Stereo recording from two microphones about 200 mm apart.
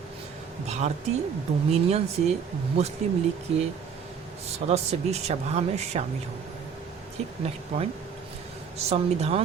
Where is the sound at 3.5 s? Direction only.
30° right (ahead or behind).